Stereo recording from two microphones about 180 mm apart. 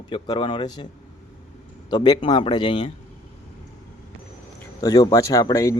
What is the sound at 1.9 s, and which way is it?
Speech, 25° left (ahead or behind).